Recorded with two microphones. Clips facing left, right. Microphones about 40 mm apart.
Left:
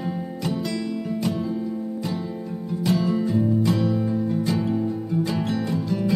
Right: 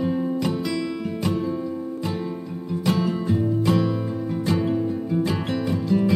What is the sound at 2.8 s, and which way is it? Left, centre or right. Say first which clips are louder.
Music: left 1 dB; right.